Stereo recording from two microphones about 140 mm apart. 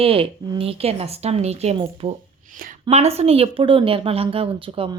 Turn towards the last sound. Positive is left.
turn(degrees=-40)  # may be behind; listen again after turning